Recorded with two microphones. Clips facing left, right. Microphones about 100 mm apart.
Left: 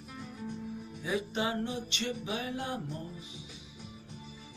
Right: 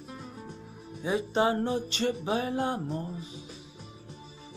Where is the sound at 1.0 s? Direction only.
35° right (ahead or behind).